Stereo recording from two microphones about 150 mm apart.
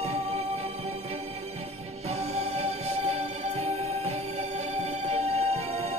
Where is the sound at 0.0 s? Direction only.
45° right (ahead or behind).